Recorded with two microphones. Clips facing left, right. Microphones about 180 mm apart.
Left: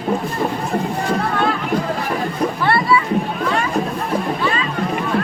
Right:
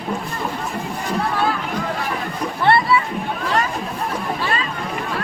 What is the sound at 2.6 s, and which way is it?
Boat, 25° right (ahead or behind).